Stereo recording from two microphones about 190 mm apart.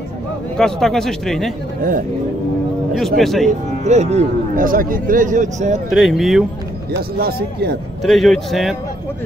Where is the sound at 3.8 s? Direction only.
35° right (ahead or behind).